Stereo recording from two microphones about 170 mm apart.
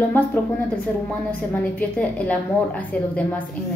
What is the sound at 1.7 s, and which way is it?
A woman's voice, 10° left (ahead or behind).